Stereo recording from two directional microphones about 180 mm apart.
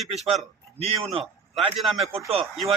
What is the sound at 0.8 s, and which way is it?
A man's voice, 30° right (ahead or behind).